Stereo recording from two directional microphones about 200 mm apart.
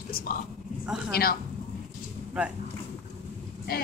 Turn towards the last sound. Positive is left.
turn(degrees=50)  # may be behind; listen again after turning